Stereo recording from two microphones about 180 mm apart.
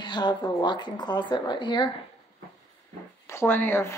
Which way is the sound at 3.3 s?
15° left (ahead or behind).